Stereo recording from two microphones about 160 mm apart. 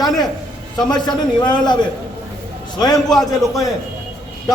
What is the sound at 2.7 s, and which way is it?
Speech, 25° left (ahead or behind).